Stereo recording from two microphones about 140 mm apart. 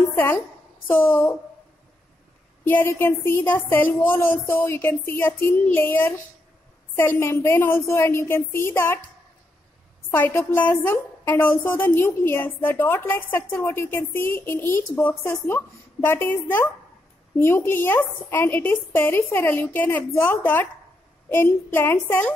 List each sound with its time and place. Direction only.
0.1 s a sound: 15° left (ahead or behind)
0.8 s a woman's voice: 15° left (ahead or behind)
2.6 s a woman's voice: 15° left (ahead or behind)
10.1 s a woman's voice: 15° left (ahead or behind)